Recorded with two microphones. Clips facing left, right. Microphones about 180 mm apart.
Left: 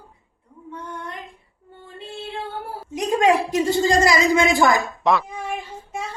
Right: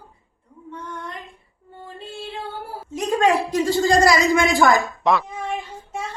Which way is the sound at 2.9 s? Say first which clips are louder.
Left 1 dB; 15° left (ahead or behind).